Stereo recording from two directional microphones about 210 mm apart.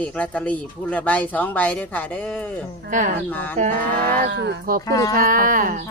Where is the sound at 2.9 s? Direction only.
35° right (ahead or behind).